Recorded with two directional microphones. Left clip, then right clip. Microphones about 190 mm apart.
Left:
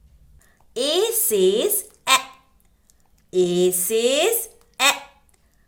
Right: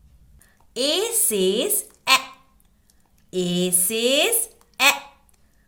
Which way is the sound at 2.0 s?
5° left (ahead or behind).